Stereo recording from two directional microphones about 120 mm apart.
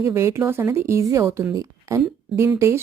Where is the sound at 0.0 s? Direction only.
25° right (ahead or behind).